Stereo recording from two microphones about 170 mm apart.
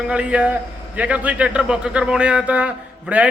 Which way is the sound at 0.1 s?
5° right (ahead or behind).